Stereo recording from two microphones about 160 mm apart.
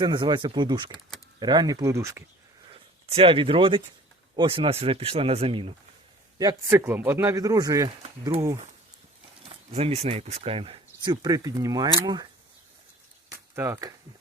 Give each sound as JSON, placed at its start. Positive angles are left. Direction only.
{"t": 0.0, "sound": "speech", "side_deg": -30}
{"t": 2.6, "sound": "speech", "side_deg": -35}
{"t": 6.7, "sound": "speech", "side_deg": -15}
{"t": 8.3, "sound": "speech", "side_deg": -40}
{"t": 13.3, "sound": "speech", "side_deg": -20}